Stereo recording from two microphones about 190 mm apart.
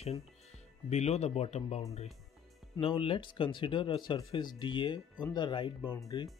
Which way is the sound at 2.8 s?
30° left (ahead or behind).